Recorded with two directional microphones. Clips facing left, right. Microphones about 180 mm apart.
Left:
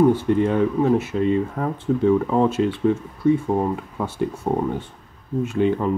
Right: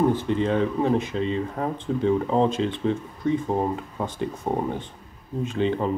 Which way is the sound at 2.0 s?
25° right (ahead or behind).